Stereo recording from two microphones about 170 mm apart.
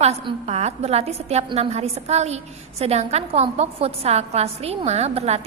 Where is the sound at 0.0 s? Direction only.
40° right (ahead or behind).